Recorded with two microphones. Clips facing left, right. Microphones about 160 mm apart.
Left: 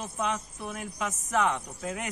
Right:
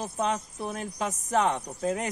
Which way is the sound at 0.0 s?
35° right (ahead or behind).